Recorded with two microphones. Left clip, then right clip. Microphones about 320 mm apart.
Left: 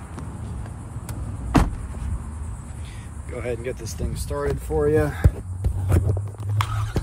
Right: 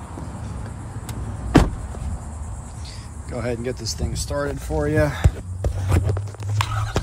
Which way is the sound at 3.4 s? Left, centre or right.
Right.